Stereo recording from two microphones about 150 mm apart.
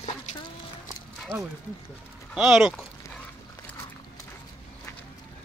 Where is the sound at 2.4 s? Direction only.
5° right (ahead or behind).